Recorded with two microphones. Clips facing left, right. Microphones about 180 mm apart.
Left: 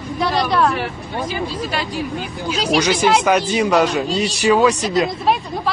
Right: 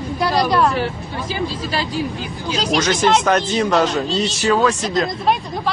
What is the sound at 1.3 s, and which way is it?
Speech, 25° right (ahead or behind).